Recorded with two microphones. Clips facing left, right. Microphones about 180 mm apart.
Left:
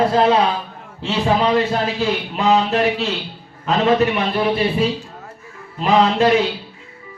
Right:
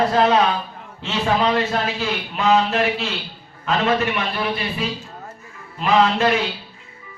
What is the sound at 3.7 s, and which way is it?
Speech, 20° left (ahead or behind).